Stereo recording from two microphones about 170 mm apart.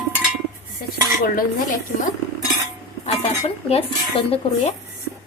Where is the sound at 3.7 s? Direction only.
35° left (ahead or behind).